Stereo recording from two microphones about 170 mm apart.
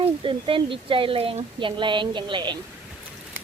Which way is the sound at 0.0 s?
30° right (ahead or behind).